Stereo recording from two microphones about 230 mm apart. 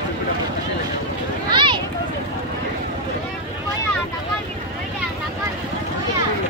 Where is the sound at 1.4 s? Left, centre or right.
Centre.